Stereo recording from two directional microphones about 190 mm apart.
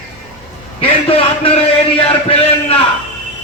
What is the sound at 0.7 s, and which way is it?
A man's voice, 30° left (ahead or behind).